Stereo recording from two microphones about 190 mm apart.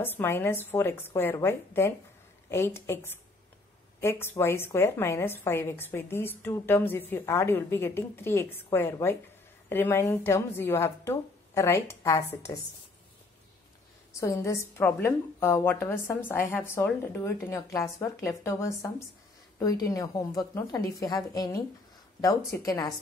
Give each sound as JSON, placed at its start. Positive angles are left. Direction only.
{"t": 0.0, "sound": "a woman's voice", "side_deg": 10}
{"t": 14.2, "sound": "a woman's voice", "side_deg": 15}